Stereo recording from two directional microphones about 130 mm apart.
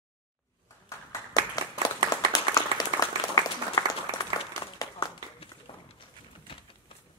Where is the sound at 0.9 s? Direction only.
25° left (ahead or behind).